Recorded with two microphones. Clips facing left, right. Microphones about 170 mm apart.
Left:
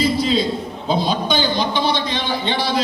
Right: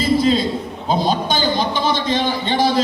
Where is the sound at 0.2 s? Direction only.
45° right (ahead or behind).